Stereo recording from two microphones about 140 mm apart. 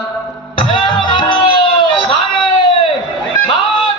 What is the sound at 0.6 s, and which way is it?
Music, 35° left (ahead or behind).